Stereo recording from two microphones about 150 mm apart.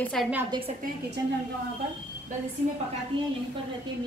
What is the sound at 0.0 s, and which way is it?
Speech, 5° left (ahead or behind).